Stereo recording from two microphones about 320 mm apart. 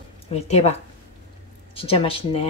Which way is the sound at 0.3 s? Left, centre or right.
Centre.